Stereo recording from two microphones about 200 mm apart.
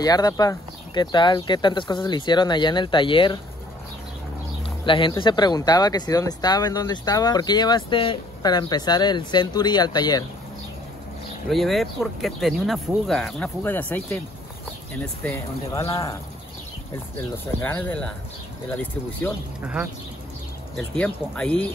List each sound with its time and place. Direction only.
0.0 s speech: 20° left (ahead or behind)
4.6 s a sound: 25° left (ahead or behind)
5.2 s speech: 20° left (ahead or behind)
11.4 s speech: centre (ahead or behind)
15.2 s speech: 10° left (ahead or behind)
17.6 s speech: 10° left (ahead or behind)
19.6 s speech: 5° right (ahead or behind)
20.7 s speech: 5° left (ahead or behind)